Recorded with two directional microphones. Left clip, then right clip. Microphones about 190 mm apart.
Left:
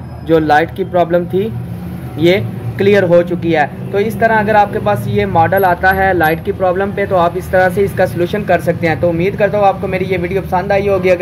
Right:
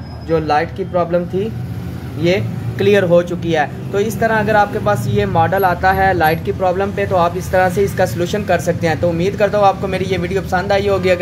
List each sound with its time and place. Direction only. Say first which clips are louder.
0.3 s speech: left 5 dB; 25° left (ahead or behind)
2.2 s speech: left 4 dB; 15° left (ahead or behind)